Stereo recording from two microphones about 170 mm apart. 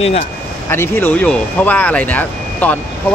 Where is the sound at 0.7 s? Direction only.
10° left (ahead or behind).